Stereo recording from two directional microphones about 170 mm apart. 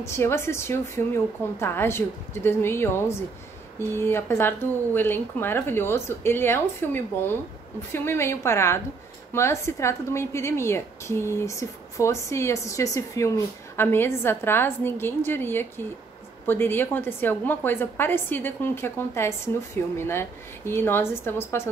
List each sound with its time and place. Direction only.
0.0 s a woman's voice: 15° left (ahead or behind)